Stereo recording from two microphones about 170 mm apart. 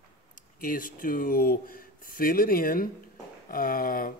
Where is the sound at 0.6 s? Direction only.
55° left (ahead or behind).